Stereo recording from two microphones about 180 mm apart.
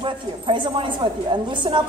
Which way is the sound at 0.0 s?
30° right (ahead or behind).